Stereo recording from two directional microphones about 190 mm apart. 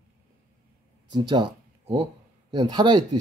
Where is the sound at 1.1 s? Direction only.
25° right (ahead or behind).